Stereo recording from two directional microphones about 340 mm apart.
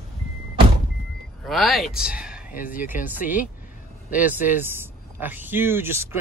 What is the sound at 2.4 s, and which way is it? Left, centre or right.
Speech, left.